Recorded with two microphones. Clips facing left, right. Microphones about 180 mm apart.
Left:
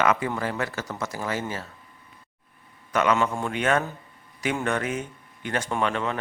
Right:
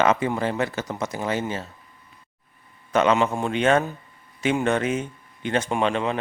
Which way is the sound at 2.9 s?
25° right (ahead or behind).